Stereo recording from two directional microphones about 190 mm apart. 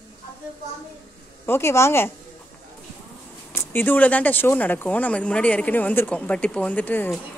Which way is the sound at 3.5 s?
15° left (ahead or behind).